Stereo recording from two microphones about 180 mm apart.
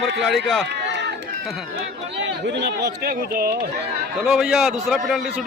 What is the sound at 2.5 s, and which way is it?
Speech, 70° right (ahead or behind).